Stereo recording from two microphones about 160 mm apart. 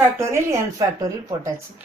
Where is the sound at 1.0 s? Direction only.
20° right (ahead or behind).